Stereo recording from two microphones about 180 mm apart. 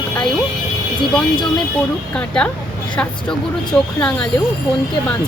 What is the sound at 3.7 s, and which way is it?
Speech, 5° left (ahead or behind).